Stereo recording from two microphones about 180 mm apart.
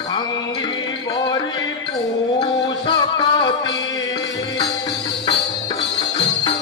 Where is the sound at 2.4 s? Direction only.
25° left (ahead or behind).